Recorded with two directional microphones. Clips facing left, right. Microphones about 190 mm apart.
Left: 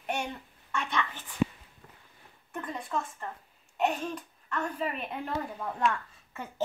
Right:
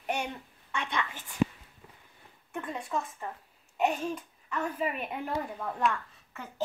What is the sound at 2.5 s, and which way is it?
A woman's voice, centre (ahead or behind).